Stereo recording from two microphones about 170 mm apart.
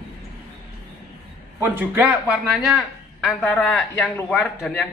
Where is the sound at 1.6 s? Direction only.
10° right (ahead or behind); by 4.8 s 5° left (ahead or behind).